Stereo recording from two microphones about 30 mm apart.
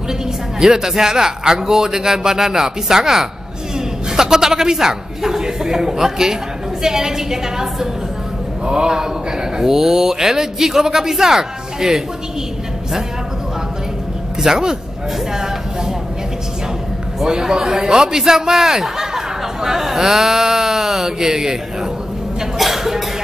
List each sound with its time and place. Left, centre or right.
0.6 s a man's voice: centre
14.4 s speech: centre
17.2 s a man's voice: centre
22.6 s a man's voice: centre